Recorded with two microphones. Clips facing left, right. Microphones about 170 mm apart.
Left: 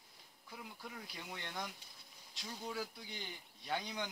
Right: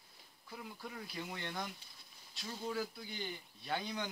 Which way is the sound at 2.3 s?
15° left (ahead or behind).